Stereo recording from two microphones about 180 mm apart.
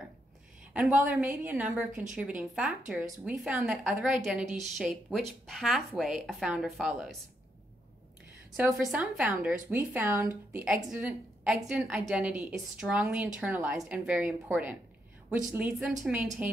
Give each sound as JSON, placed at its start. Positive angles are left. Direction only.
{"t": 1.1, "sound": "a woman's voice", "side_deg": -10}
{"t": 1.9, "sound": "speech", "side_deg": -45}
{"t": 2.1, "sound": "a woman's voice", "side_deg": -5}
{"t": 8.5, "sound": "a woman's voice", "side_deg": -5}